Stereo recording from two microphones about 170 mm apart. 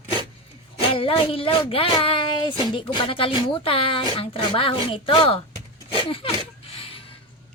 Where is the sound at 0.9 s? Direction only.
35° left (ahead or behind).